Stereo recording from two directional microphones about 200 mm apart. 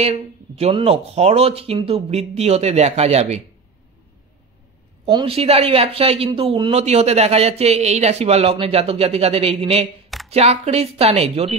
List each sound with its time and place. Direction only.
0.0 s speech: 30° right (ahead or behind)
5.0 s a man's voice: 30° right (ahead or behind)